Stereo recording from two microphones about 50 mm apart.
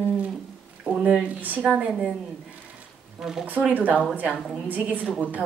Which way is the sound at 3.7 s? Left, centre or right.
Right.